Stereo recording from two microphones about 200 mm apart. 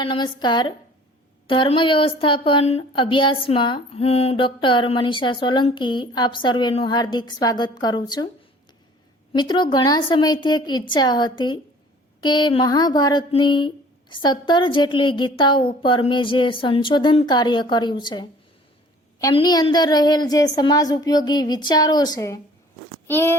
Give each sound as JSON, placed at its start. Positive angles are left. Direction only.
{"t": 0.0, "sound": "a woman's voice", "side_deg": 25}
{"t": 9.3, "sound": "a woman's voice", "side_deg": 20}
{"t": 23.0, "sound": "crunch", "side_deg": 10}